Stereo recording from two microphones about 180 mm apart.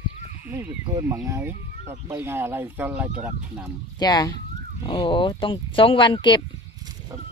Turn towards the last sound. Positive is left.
turn(degrees=-20)  # may be behind; listen again after turning